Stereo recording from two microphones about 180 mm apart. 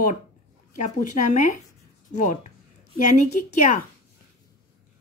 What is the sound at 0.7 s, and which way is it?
Speech, 45° left (ahead or behind).